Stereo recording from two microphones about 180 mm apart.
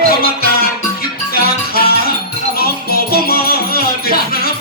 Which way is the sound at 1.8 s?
60° left (ahead or behind).